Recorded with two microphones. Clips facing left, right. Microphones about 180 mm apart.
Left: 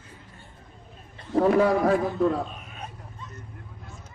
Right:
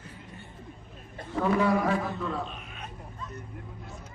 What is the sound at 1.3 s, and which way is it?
A man's voice, 45° left (ahead or behind).